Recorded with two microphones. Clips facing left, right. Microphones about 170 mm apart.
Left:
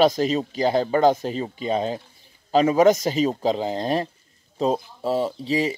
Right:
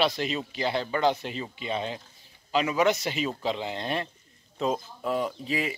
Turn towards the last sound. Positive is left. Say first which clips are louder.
# left 6 dB
turn(degrees=35)  # may be behind; listen again after turning